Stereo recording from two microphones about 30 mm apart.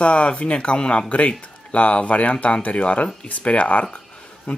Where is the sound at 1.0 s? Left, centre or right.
Left.